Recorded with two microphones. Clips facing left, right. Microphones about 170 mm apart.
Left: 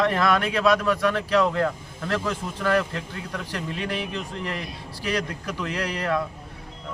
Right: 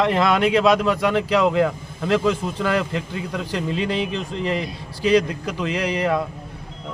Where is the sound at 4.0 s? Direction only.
90° right.